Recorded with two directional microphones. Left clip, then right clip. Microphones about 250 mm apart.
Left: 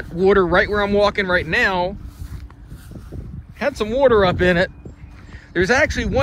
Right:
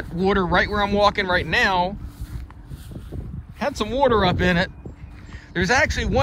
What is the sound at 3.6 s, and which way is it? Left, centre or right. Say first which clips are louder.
Speech: left 4 dB; centre.